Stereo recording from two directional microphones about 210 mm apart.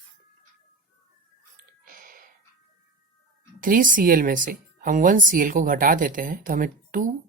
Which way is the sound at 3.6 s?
40° right (ahead or behind).